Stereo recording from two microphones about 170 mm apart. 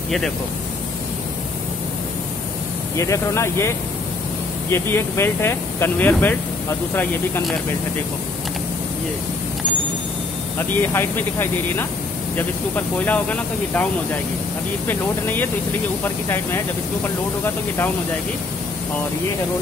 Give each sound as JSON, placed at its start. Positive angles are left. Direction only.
{"t": 3.0, "sound": "speech", "side_deg": 15}
{"t": 10.8, "sound": "speech", "side_deg": 15}
{"t": 14.9, "sound": "speech", "side_deg": 10}